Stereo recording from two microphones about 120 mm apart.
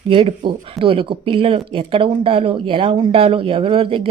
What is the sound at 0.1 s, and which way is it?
Speech, 45° right (ahead or behind).